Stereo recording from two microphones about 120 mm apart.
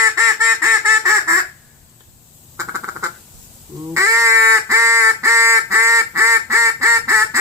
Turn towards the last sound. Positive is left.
turn(degrees=-25)  # may be behind; listen again after turning